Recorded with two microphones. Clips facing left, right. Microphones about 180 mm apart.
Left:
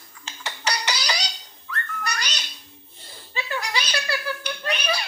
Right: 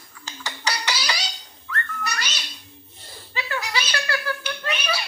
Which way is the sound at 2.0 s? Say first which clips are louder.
Left 2 dB; 5° right (ahead or behind).